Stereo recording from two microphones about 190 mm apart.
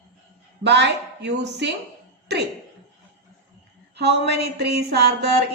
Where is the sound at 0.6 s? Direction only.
65° right (ahead or behind).